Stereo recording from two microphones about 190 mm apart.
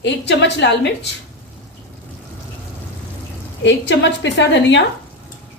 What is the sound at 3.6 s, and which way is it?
A woman's voice, 70° left (ahead or behind).